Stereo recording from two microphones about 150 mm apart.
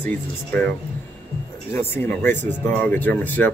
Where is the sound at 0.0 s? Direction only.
10° left (ahead or behind).